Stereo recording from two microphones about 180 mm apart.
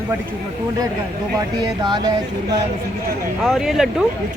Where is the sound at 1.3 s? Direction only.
25° right (ahead or behind).